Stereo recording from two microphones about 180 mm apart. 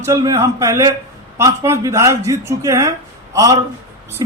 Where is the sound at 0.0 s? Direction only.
20° right (ahead or behind).